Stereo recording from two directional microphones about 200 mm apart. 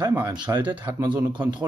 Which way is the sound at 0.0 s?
10° right (ahead or behind).